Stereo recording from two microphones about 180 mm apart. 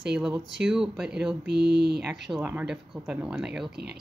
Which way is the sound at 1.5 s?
65° right (ahead or behind).